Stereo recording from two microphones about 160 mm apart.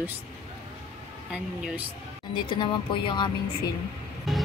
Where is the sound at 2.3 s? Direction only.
30° left (ahead or behind).